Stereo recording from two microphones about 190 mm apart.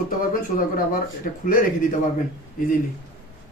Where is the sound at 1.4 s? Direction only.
45° left (ahead or behind).